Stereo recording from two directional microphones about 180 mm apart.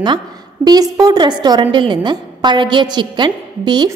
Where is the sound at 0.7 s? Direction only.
20° right (ahead or behind).